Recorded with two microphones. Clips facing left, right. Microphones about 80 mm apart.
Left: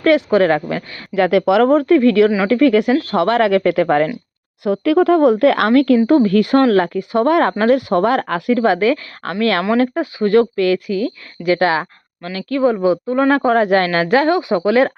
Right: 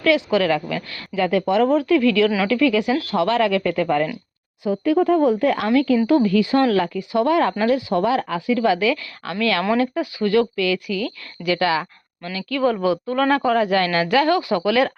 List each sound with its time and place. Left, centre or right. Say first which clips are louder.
0.0 s speech: left 5 dB; left
1.1 s speech: left 5 dB; left
1.6 s speech: left 5 dB; left
4.6 s speech: left 4 dB; left
6.1 s speech: left 4 dB; left
8.5 s speech: left 4 dB; left
12.6 s a woman's voice: left 4 dB; left
13.3 s speech: left 4 dB; left